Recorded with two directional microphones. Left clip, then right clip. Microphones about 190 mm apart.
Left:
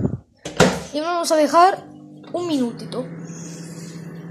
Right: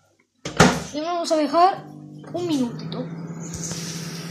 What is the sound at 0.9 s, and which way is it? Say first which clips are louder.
Speech: left 3 dB; 30° left (ahead or behind).